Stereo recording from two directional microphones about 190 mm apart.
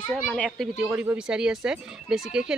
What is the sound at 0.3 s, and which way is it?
Speech, centre (ahead or behind).